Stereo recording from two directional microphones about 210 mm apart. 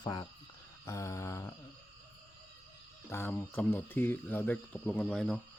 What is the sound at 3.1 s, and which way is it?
Speech, 10° left (ahead or behind).